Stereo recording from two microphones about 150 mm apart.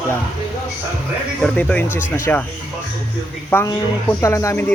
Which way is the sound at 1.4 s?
10° left (ahead or behind).